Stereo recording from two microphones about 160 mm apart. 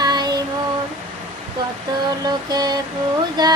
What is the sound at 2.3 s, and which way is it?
Mantra, 25° right (ahead or behind).